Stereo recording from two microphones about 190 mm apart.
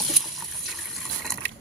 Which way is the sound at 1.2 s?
5° left (ahead or behind).